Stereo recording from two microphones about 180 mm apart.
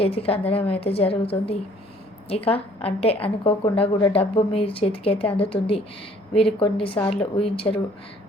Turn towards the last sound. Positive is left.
turn(degrees=30)  # may be behind; listen again after turning